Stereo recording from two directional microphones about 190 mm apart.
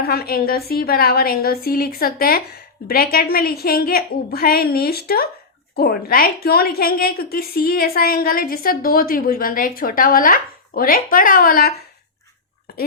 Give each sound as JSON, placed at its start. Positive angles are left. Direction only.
{"t": 0.0, "sound": "a woman's voice", "side_deg": 55}